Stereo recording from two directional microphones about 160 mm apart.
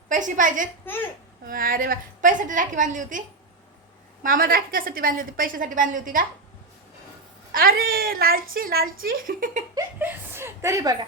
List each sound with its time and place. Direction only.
0.1 s a woman's voice: 55° right (ahead or behind)
7.5 s a woman's voice: 65° right (ahead or behind)
9.7 s speech: 15° right (ahead or behind)